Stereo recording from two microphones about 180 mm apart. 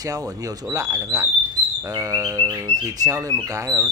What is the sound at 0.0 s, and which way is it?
Speech, 20° right (ahead or behind).